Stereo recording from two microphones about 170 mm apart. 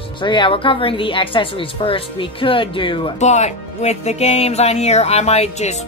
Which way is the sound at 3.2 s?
40° left (ahead or behind).